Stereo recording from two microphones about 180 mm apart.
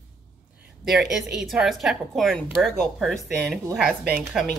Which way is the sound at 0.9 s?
5° right (ahead or behind).